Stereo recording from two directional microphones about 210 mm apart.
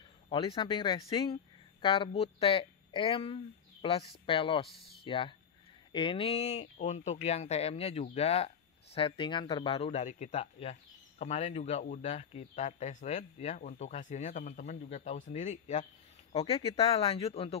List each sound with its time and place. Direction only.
0.3 s speech: 25° left (ahead or behind)